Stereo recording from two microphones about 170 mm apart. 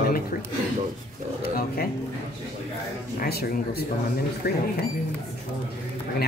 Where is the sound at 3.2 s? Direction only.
65° left (ahead or behind).